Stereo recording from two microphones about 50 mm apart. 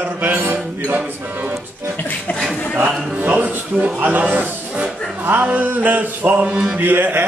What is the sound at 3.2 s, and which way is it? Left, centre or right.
Mantra, right.